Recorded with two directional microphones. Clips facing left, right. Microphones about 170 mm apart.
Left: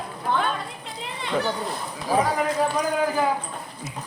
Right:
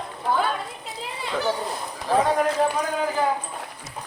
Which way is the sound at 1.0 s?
Centre (ahead or behind).